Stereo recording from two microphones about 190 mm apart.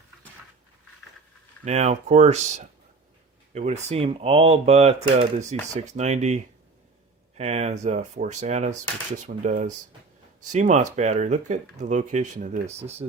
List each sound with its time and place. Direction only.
1.6 s speech: 35° right (ahead or behind)